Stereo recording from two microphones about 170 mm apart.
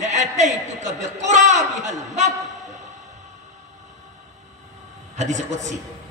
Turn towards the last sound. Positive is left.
turn(degrees=-45)  # may be behind; listen again after turning